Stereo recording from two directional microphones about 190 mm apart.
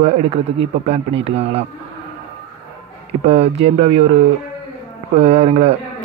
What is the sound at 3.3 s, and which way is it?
Speech, 30° right (ahead or behind).